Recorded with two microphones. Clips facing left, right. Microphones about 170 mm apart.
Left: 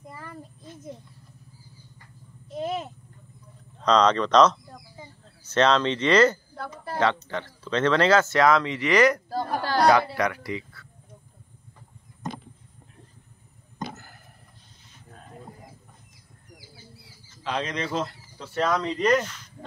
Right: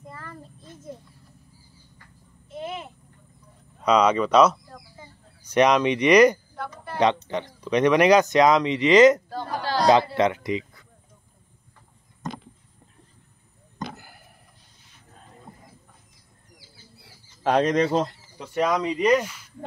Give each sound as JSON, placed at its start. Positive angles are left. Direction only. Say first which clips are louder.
{"t": 0.0, "sound": "child singing", "louder": "even", "side_deg": 10}
{"t": 2.5, "sound": "a sound", "louder": "left 4 dB", "side_deg": 40}
{"t": 3.8, "sound": "speech", "louder": "right 1 dB", "side_deg": -10}
{"t": 6.5, "sound": "a sound", "louder": "even", "side_deg": 35}
{"t": 7.0, "sound": "speech", "louder": "right 3 dB", "side_deg": -20}
{"t": 9.3, "sound": "chatter", "louder": "left 1 dB", "side_deg": 40}
{"t": 10.1, "sound": "speech", "louder": "right 5 dB", "side_deg": -20}
{"t": 17.4, "sound": "speech", "louder": "right 9 dB", "side_deg": -50}
{"t": 18.0, "sound": "speech", "louder": "right 2 dB", "side_deg": -15}